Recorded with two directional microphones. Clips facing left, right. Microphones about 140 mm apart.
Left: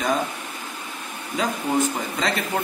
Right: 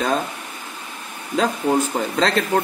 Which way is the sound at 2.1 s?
75° right (ahead or behind).